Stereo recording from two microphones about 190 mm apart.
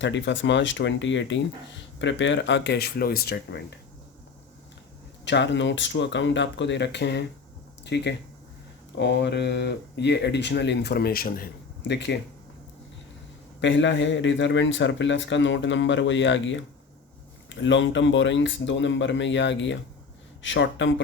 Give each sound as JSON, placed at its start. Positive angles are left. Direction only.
{"t": 0.0, "sound": "speech", "side_deg": 75}
{"t": 5.2, "sound": "speech", "side_deg": 70}
{"t": 11.8, "sound": "speech", "side_deg": 65}
{"t": 13.6, "sound": "speech", "side_deg": 75}